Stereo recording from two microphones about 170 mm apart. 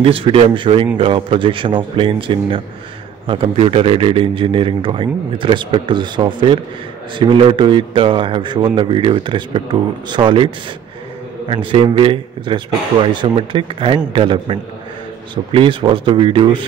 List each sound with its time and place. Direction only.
0.0 s a man's voice: 30° right (ahead or behind)